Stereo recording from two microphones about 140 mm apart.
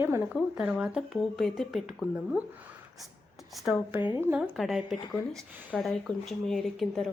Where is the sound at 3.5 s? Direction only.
Centre (ahead or behind).